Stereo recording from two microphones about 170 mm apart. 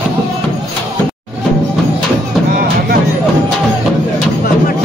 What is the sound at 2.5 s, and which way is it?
Music, 60° right (ahead or behind).